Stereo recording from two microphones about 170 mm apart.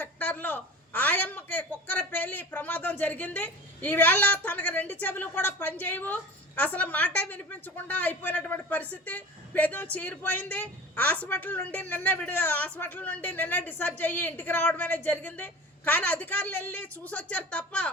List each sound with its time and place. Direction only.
0.0 s a woman's voice: 10° left (ahead or behind)